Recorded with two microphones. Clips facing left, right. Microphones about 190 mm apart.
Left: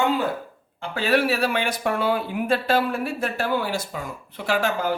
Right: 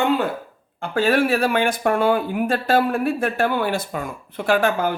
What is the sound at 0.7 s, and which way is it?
Speech, 50° right (ahead or behind).